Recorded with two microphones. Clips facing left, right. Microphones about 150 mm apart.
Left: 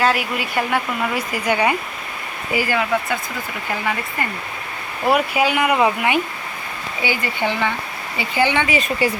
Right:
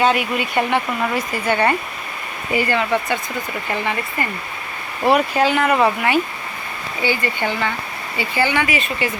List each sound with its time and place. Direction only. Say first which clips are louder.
0.0 s speech: right 2 dB; centre (ahead or behind)
5.1 s speech: right 1 dB; 10° left (ahead or behind)
8.6 s speech: left 2 dB; 35° left (ahead or behind)